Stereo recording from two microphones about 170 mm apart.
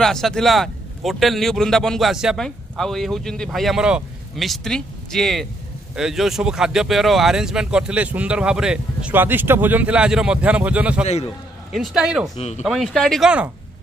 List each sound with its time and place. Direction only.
0.0 s a man's voice: centre (ahead or behind)
12.4 s speech: 40° left (ahead or behind)
12.6 s a man's voice: centre (ahead or behind)